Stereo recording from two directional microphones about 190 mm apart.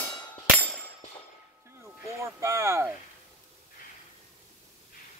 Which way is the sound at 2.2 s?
15° right (ahead or behind).